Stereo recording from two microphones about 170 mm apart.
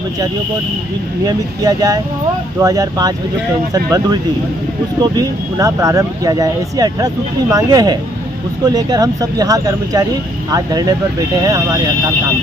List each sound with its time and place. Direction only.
1.2 s speech: 20° right (ahead or behind)